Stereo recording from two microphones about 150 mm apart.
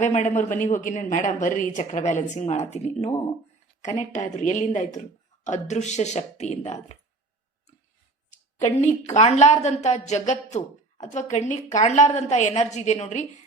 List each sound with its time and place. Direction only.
0.0 s speech: 55° left (ahead or behind)
8.3 s speech: 50° left (ahead or behind)